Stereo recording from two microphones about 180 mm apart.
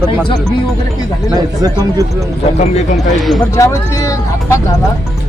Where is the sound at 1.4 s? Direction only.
20° right (ahead or behind).